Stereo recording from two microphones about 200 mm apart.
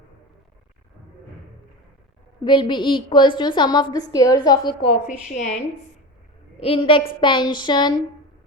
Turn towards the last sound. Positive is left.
turn(degrees=20)  # may be behind; listen again after turning